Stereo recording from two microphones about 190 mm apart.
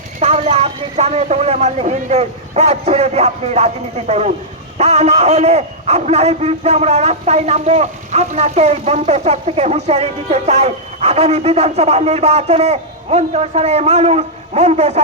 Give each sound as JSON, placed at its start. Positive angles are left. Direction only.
{"t": 0.2, "sound": "a man's voice", "side_deg": -35}